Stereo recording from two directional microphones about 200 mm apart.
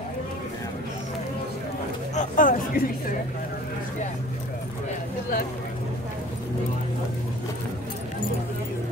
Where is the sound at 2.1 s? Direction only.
40° left (ahead or behind).